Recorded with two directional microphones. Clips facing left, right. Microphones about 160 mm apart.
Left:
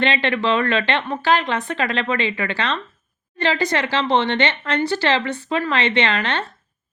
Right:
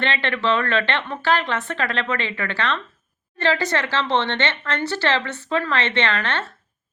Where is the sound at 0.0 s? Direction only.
15° left (ahead or behind).